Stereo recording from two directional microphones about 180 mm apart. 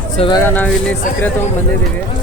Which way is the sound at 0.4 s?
10° left (ahead or behind).